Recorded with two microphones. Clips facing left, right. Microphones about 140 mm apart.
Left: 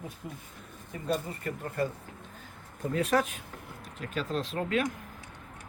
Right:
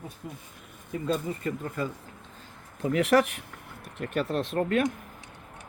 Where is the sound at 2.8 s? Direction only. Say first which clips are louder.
Right 5 dB; 85° right; by 4.8 s 55° right (ahead or behind).